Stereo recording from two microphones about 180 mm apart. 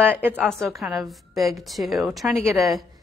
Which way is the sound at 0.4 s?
5° left (ahead or behind).